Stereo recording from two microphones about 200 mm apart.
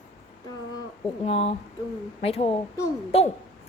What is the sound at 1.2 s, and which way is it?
A woman's voice, 30° left (ahead or behind).